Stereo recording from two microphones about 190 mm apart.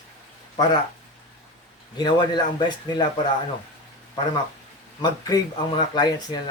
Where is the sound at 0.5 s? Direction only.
20° left (ahead or behind).